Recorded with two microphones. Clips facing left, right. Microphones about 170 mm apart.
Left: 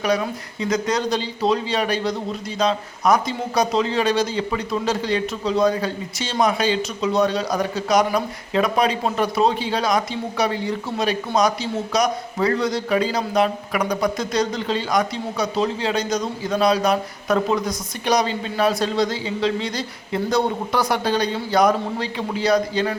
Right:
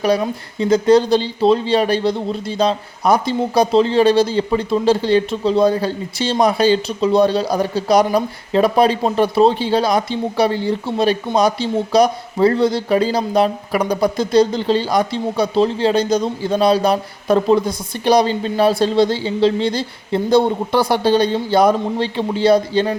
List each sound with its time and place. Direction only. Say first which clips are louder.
0.0 s a man's voice: right 4 dB; 30° right (ahead or behind)